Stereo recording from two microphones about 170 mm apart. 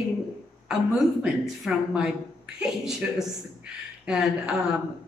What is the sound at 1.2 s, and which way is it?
A woman's voice, 5° right (ahead or behind).